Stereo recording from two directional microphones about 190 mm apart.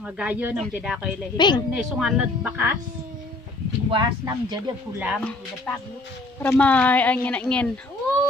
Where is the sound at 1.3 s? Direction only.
25° left (ahead or behind).